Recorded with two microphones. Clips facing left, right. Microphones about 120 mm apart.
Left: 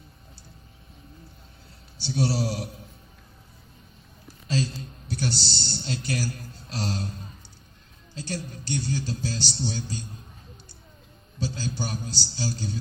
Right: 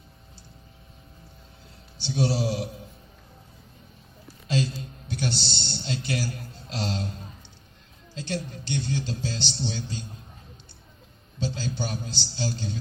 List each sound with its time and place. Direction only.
2.2 s a woman's voice: 40° left (ahead or behind)
4.4 s a sound: 40° left (ahead or behind)
6.7 s a woman's voice: 40° left (ahead or behind)
8.1 s a woman's voice: 40° left (ahead or behind)
11.3 s a woman's voice: 40° left (ahead or behind)